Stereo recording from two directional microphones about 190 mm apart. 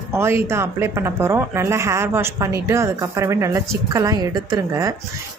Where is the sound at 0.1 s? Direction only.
15° right (ahead or behind).